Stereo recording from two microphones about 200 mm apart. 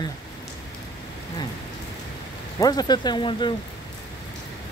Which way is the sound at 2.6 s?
20° left (ahead or behind).